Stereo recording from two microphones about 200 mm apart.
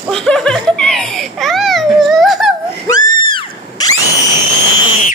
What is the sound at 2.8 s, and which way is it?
Screaming, 20° left (ahead or behind).